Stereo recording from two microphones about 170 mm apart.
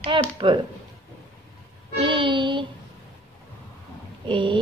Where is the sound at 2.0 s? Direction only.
30° right (ahead or behind).